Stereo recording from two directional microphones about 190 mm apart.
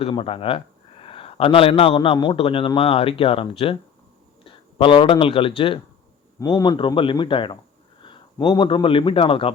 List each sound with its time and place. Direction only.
0.0 s a man's voice: 30° left (ahead or behind)